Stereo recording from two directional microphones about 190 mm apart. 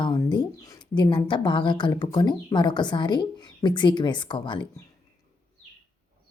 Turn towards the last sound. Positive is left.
turn(degrees=25)  # may be behind; listen again after turning